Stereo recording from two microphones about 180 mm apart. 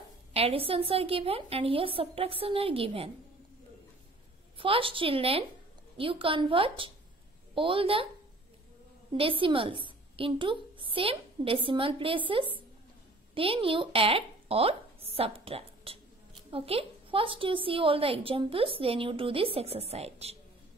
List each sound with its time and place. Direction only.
0.3 s a woman's voice: 30° right (ahead or behind)
4.6 s a woman's voice: 30° right (ahead or behind)
9.1 s a woman's voice: 30° right (ahead or behind)